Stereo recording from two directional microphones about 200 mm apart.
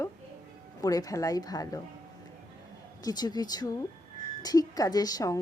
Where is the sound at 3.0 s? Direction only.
20° left (ahead or behind).